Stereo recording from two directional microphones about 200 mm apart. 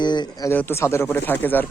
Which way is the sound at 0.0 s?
20° left (ahead or behind).